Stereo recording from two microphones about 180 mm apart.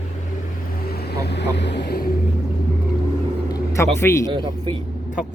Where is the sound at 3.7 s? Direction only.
15° left (ahead or behind).